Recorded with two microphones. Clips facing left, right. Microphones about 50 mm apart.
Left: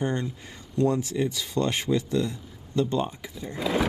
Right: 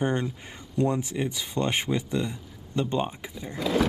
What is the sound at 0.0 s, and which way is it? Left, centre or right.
Speech, right.